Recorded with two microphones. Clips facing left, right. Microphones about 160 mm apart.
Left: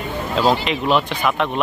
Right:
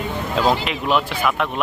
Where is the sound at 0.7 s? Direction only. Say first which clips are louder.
Left 2 dB; 5° right (ahead or behind).